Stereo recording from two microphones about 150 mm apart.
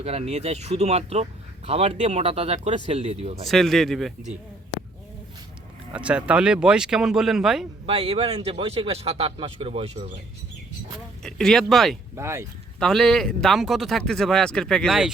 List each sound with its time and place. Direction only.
0.0 s speech: 45° right (ahead or behind)
3.4 s speech: centre (ahead or behind)
5.9 s speech: 5° right (ahead or behind)
7.9 s a man's voice: 40° right (ahead or behind)
11.2 s speech: 5° left (ahead or behind)
12.1 s speech: 20° right (ahead or behind)
12.8 s speech: 5° left (ahead or behind)